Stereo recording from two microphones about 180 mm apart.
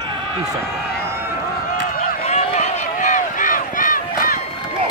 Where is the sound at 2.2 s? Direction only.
35° left (ahead or behind).